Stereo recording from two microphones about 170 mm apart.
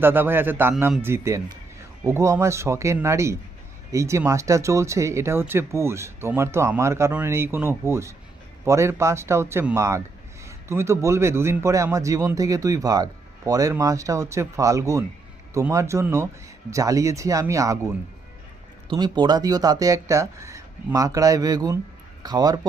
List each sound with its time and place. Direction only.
0.0 s a man's voice: 10° right (ahead or behind)